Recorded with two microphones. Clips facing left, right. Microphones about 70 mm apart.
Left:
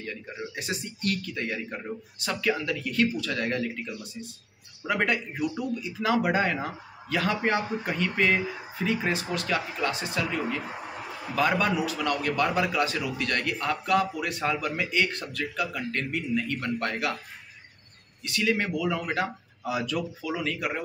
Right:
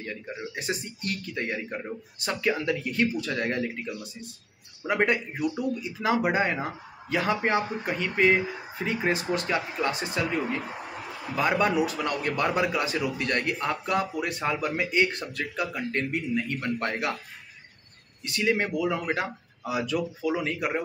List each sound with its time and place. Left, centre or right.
0.6 s a man's voice: right
18.2 s a man's voice: right